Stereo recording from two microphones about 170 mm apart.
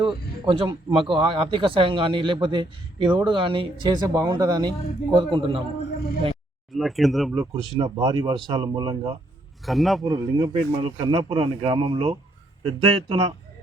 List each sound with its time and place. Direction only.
0.0 s speech: 30° right (ahead or behind)
6.7 s speech: centre (ahead or behind)
7.5 s speech: 30° right (ahead or behind)
9.6 s speech: centre (ahead or behind)
10.0 s speech: 25° right (ahead or behind)